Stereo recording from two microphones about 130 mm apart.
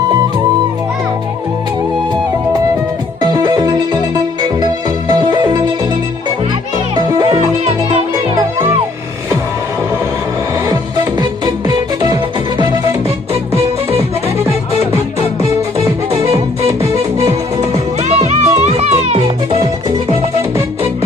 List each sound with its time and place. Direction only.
3.2 s music: 30° right (ahead or behind)
6.9 s music: 30° right (ahead or behind)
11.2 s music: 35° right (ahead or behind)
18.1 s music: 55° right (ahead or behind)